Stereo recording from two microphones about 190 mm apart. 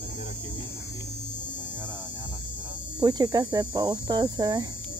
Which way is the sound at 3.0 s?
20° right (ahead or behind).